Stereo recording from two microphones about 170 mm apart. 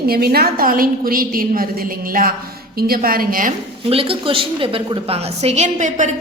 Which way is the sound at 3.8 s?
35° right (ahead or behind).